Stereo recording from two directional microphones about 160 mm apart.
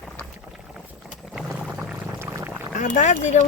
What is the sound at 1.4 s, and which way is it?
Music, 5° right (ahead or behind).